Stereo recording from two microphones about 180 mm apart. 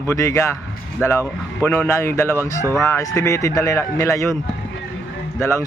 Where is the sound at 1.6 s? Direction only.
15° left (ahead or behind).